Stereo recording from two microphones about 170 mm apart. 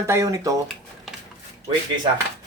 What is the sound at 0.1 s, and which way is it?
Speech, 20° right (ahead or behind).